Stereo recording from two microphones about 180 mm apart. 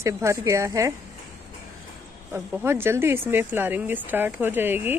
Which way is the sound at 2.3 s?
15° right (ahead or behind).